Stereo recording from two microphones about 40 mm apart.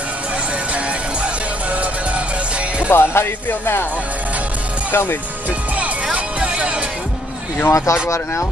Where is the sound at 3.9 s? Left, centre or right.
Right.